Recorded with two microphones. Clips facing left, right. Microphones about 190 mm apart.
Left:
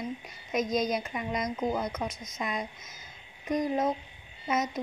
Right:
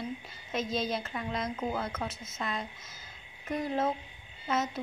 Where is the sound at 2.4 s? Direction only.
15° left (ahead or behind).